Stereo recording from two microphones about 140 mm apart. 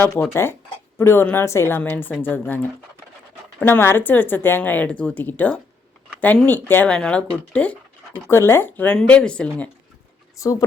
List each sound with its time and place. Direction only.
0.0 s speech: 15° left (ahead or behind)
3.6 s speech: 15° left (ahead or behind)
10.3 s speech: 25° left (ahead or behind)